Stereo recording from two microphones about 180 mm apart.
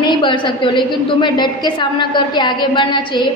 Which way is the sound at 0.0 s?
25° left (ahead or behind).